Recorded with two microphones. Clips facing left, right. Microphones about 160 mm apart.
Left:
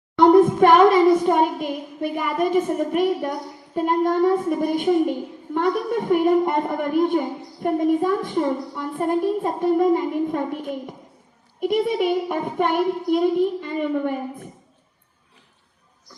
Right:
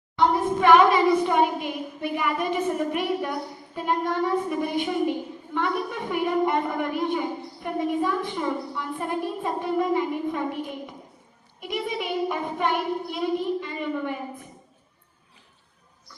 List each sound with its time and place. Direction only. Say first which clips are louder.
0.2 s a woman's voice: left 9 dB; 50° left (ahead or behind)